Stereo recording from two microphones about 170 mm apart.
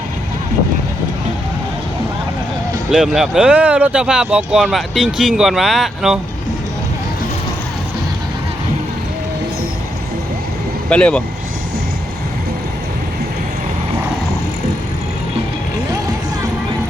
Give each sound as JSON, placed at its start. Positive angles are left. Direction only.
{"t": 2.9, "sound": "speech", "side_deg": 0}
{"t": 10.8, "sound": "speech", "side_deg": 5}
{"t": 15.9, "sound": "vehicle", "side_deg": -20}